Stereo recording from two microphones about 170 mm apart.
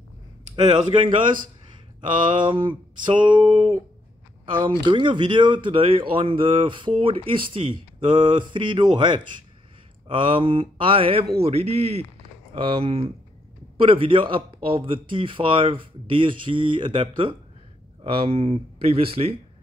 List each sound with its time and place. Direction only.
0.6 s speech: 25° right (ahead or behind)
2.3 s speech: 30° right (ahead or behind)